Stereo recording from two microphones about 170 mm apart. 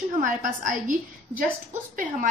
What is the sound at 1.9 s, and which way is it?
Speech, 55° right (ahead or behind).